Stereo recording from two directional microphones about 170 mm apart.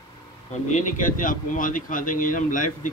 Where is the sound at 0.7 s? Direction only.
50° left (ahead or behind).